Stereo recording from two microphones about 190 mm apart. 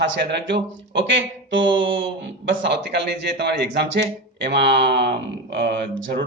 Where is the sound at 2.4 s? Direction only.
65° right (ahead or behind).